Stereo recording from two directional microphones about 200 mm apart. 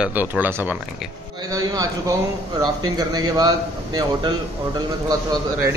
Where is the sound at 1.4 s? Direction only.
20° right (ahead or behind).